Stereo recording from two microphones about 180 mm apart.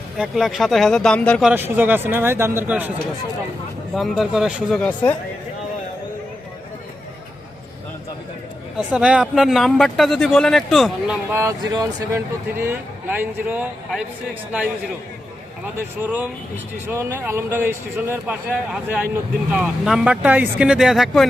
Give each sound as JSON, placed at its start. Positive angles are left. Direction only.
{"t": 0.2, "sound": "speech", "side_deg": 0}
{"t": 1.5, "sound": "speech", "side_deg": -10}
{"t": 3.9, "sound": "speech", "side_deg": 0}
{"t": 4.8, "sound": "speech", "side_deg": 10}
{"t": 8.9, "sound": "speech", "side_deg": -5}
{"t": 15.6, "sound": "speech", "side_deg": -10}